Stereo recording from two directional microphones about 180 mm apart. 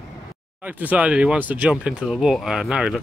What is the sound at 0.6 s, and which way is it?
Speech, 10° right (ahead or behind).